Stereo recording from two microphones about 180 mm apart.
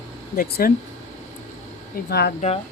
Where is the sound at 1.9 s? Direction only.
65° left (ahead or behind).